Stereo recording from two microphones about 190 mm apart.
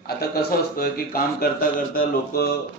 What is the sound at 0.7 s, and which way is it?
A man's voice, 50° left (ahead or behind).